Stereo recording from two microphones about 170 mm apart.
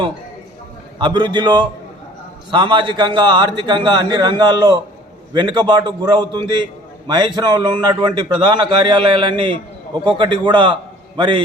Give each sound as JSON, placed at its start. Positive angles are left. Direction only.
{"t": 0.9, "sound": "a man's voice", "side_deg": -25}